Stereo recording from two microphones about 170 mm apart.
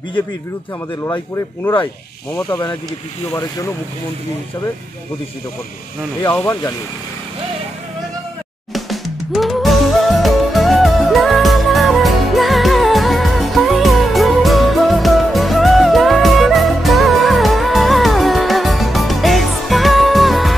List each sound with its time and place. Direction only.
1.0 s speech: 20° left (ahead or behind)
6.2 s speech: 15° left (ahead or behind)
8.7 s music: centre (ahead or behind)